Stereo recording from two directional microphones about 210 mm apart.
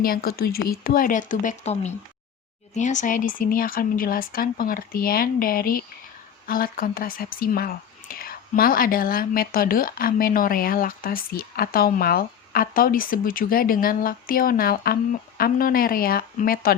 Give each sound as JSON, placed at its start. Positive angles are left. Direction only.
{"t": 0.0, "sound": "speech", "side_deg": 45}